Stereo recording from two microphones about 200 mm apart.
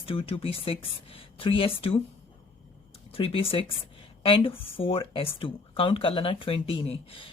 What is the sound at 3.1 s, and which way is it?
A woman's voice, 30° left (ahead or behind).